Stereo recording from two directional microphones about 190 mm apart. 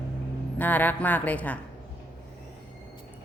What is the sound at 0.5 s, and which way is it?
Speech, 10° left (ahead or behind).